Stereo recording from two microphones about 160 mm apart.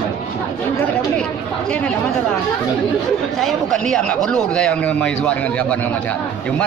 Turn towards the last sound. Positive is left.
turn(degrees=10)  # may be behind; listen again after turning